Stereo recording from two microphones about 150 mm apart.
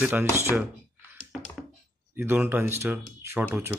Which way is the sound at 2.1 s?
15° right (ahead or behind).